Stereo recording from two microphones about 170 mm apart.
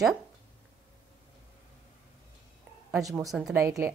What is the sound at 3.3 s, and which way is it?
Speech, centre (ahead or behind).